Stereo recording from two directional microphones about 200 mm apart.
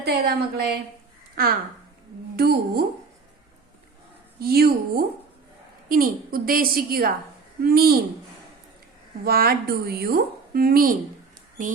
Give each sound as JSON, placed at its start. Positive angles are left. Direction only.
{"t": 0.0, "sound": "a woman's voice", "side_deg": -55}
{"t": 4.4, "sound": "a woman's voice", "side_deg": -50}
{"t": 9.2, "sound": "a woman's voice", "side_deg": -50}